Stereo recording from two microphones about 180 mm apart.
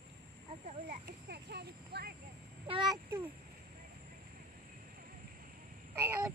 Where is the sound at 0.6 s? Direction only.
50° right (ahead or behind).